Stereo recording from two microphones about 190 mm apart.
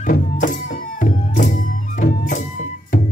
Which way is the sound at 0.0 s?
45° left (ahead or behind).